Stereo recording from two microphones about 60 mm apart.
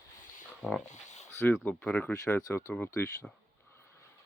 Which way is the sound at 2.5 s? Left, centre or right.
Left.